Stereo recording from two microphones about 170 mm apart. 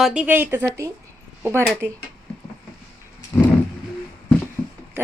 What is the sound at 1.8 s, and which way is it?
Speech, 80° right.